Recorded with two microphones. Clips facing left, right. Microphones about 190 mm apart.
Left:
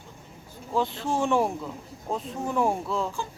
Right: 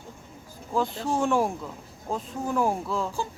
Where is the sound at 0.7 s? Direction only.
Centre (ahead or behind).